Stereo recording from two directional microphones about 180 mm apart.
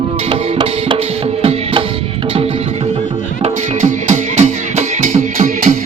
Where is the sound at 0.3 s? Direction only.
30° right (ahead or behind).